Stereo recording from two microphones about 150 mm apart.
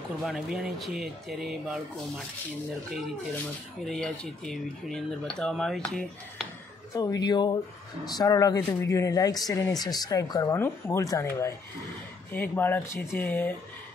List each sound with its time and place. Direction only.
0.2 s speech: centre (ahead or behind)
3.8 s speech: 5° left (ahead or behind)
7.0 s speech: 25° left (ahead or behind)